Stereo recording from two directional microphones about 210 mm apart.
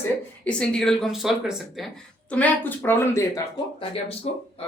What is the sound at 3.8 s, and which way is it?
Speech, 30° left (ahead or behind).